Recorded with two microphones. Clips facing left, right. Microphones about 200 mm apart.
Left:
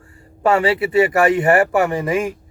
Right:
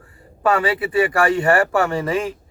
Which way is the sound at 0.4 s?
25° left (ahead or behind).